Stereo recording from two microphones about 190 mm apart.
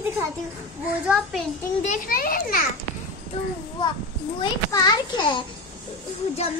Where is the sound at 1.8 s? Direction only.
45° left (ahead or behind).